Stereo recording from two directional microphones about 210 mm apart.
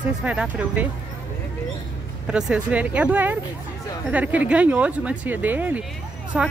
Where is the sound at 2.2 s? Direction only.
5° right (ahead or behind).